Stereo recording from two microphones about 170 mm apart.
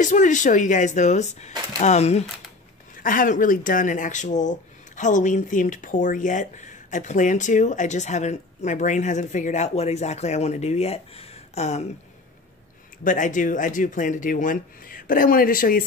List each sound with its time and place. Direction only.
0.0 s speech: 45° left (ahead or behind)
3.0 s speech: 50° left (ahead or behind)
13.0 s speech: 50° left (ahead or behind)